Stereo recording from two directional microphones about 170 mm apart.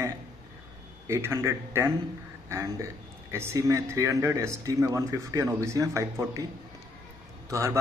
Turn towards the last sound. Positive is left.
turn(degrees=-15)  # may be behind; listen again after turning